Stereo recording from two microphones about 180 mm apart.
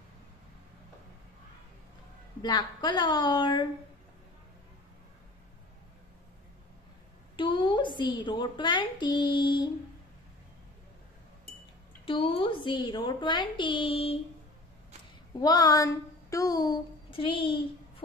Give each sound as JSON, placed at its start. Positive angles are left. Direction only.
{"t": 2.4, "sound": "a woman's voice", "side_deg": 25}
{"t": 7.3, "sound": "a woman's voice", "side_deg": 25}
{"t": 12.1, "sound": "a woman's voice", "side_deg": 30}
{"t": 15.3, "sound": "speech", "side_deg": 20}